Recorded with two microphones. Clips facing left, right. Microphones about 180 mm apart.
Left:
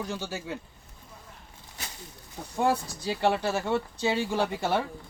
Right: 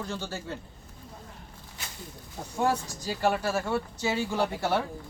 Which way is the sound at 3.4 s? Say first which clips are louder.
Left 1 dB; 20° left (ahead or behind).